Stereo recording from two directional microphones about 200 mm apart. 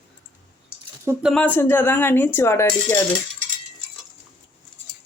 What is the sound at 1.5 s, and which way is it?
Speech, 10° left (ahead or behind).